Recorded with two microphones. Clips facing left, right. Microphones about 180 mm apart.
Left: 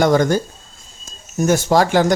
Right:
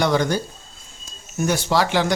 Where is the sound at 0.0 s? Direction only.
45° left (ahead or behind).